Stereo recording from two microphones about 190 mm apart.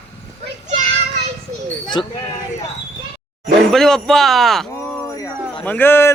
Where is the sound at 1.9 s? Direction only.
20° left (ahead or behind).